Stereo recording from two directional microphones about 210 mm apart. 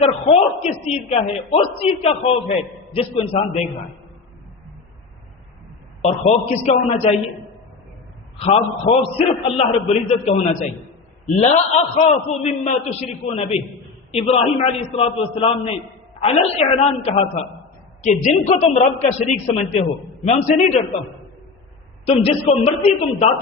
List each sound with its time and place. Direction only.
0.0 s a man's voice: 30° left (ahead or behind)
6.0 s a man's voice: 30° left (ahead or behind)
8.4 s a man's voice: 30° left (ahead or behind)
22.0 s a man's voice: 30° left (ahead or behind)